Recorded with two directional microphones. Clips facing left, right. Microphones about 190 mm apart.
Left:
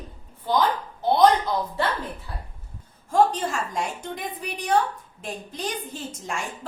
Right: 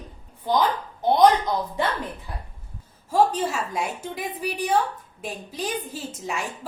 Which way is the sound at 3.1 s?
5° right (ahead or behind).